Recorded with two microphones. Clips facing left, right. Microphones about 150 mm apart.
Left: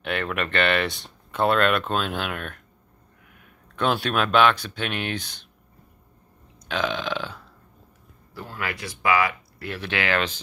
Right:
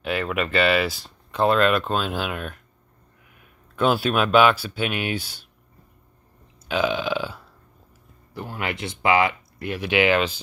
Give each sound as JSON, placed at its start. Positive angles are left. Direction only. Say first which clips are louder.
{"t": 0.0, "sound": "speech", "louder": "right 2 dB", "side_deg": 0}
{"t": 6.7, "sound": "burping", "louder": "right 4 dB", "side_deg": -10}
{"t": 8.4, "sound": "speech", "louder": "right 3 dB", "side_deg": -20}